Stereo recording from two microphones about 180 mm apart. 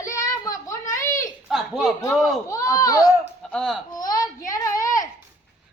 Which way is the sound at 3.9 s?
20° left (ahead or behind).